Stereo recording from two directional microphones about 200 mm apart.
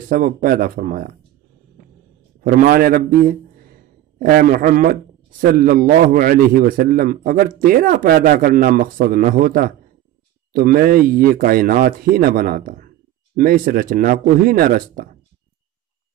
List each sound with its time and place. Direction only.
0.1 s speech: 45° right (ahead or behind)
2.4 s speech: 45° right (ahead or behind)